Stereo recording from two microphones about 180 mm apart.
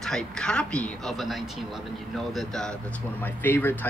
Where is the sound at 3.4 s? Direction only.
10° left (ahead or behind).